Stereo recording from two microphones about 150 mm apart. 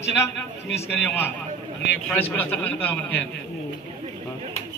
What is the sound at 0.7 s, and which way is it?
A man's voice, 15° left (ahead or behind).